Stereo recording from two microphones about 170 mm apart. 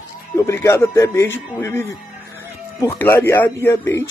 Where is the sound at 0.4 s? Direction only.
15° left (ahead or behind).